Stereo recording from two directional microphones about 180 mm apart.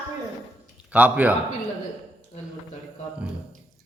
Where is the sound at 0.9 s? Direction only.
10° right (ahead or behind).